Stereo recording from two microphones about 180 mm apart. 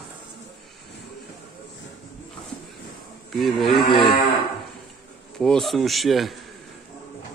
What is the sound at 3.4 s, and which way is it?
Speech, centre (ahead or behind).